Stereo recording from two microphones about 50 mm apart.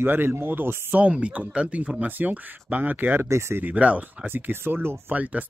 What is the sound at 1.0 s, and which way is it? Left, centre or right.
Speech, right.